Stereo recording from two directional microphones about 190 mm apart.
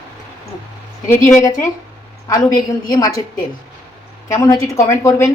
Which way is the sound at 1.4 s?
15° left (ahead or behind).